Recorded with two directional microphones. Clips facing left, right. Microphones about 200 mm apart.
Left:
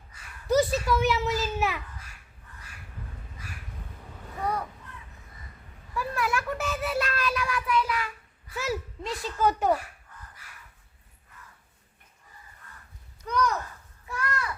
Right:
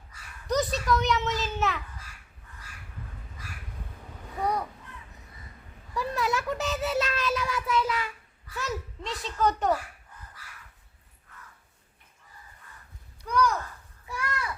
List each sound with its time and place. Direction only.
0.4 s a child's voice: 5° left (ahead or behind)
4.4 s a child's voice: 15° right (ahead or behind)
5.9 s a child's voice: 20° right (ahead or behind)
8.5 s a child's voice: 5° left (ahead or behind)
13.2 s speech: 5° right (ahead or behind)
14.1 s a sound: 10° right (ahead or behind)